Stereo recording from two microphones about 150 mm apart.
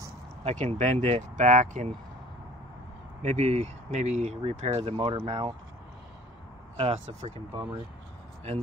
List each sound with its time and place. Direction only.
0.4 s speech: 45° right (ahead or behind)
3.2 s speech: 50° right (ahead or behind); by 5.5 s 35° right (ahead or behind)
6.8 s speech: 40° right (ahead or behind)